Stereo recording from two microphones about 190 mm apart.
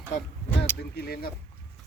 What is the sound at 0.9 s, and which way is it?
Speech, 55° left (ahead or behind).